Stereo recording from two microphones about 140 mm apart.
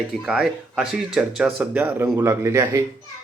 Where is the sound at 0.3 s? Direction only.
5° right (ahead or behind).